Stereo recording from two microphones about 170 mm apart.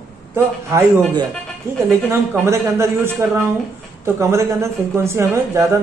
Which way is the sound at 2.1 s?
15° right (ahead or behind).